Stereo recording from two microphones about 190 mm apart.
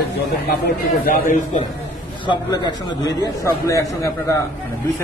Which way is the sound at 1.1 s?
45° left (ahead or behind).